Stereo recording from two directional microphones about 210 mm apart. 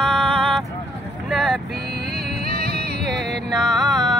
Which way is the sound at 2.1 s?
45° right (ahead or behind).